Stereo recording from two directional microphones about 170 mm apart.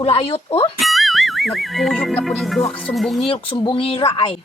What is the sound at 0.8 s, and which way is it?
Speech, centre (ahead or behind).